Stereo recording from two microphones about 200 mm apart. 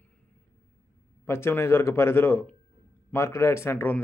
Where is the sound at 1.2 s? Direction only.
10° left (ahead or behind).